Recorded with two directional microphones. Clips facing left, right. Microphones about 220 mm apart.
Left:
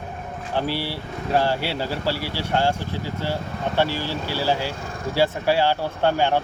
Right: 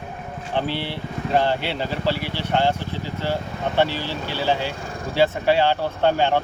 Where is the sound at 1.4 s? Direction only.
10° left (ahead or behind).